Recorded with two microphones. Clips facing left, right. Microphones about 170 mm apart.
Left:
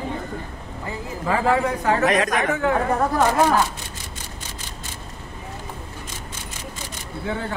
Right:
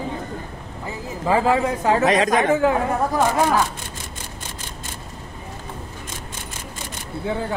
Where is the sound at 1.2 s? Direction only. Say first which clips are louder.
Right 2 dB; 20° right (ahead or behind).